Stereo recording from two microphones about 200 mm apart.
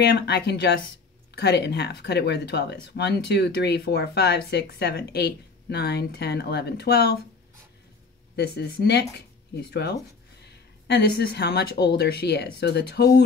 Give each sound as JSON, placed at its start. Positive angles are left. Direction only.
{"t": 0.0, "sound": "speech", "side_deg": 55}
{"t": 8.4, "sound": "speech", "side_deg": 55}